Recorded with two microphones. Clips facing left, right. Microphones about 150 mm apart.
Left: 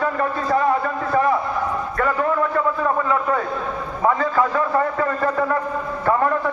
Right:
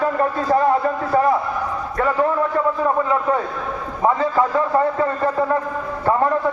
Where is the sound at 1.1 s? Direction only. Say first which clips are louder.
Right 2 dB; 30° right (ahead or behind).